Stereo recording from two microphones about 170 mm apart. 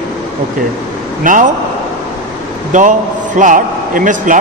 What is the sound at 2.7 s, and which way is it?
A man's voice, 50° right (ahead or behind).